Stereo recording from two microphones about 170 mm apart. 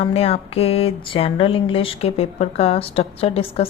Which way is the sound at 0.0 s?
35° left (ahead or behind).